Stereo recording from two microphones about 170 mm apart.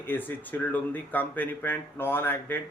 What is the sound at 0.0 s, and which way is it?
A man's voice, 10° left (ahead or behind).